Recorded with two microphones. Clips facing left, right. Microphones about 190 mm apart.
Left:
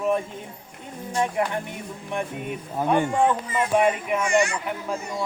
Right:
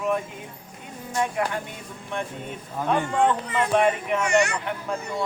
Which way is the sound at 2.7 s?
15° left (ahead or behind).